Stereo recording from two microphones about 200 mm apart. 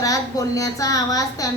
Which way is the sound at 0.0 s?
15° left (ahead or behind).